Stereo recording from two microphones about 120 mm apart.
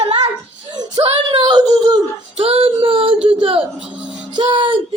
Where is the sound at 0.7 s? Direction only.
35° right (ahead or behind).